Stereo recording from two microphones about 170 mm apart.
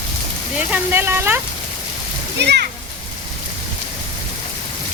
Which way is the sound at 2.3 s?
80° right.